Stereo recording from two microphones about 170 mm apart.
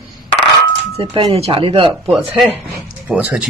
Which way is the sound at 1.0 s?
35° right (ahead or behind).